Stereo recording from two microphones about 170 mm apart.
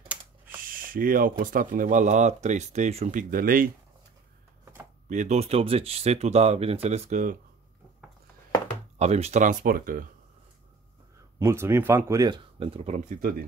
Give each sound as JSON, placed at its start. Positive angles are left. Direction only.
{"t": 0.7, "sound": "a sound", "side_deg": -55}
{"t": 1.4, "sound": "speech", "side_deg": -55}
{"t": 5.1, "sound": "speech", "side_deg": -45}
{"t": 8.9, "sound": "speech", "side_deg": -40}
{"t": 11.3, "sound": "speech", "side_deg": -15}